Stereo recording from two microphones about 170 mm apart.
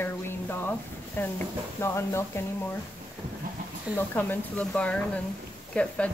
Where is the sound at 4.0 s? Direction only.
10° left (ahead or behind).